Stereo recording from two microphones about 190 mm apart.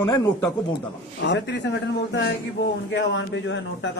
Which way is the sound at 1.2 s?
65° left (ahead or behind).